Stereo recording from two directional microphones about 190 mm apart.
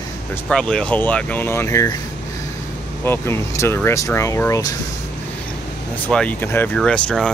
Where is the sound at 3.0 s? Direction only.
10° left (ahead or behind).